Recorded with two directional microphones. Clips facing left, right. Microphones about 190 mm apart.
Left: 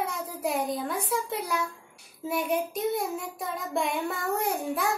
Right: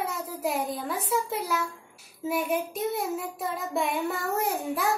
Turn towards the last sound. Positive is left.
turn(degrees=0)  # may be behind; listen again after turning